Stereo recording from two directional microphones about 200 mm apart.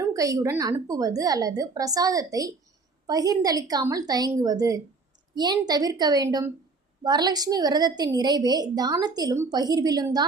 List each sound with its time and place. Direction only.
0.0 s a woman's voice: 15° right (ahead or behind)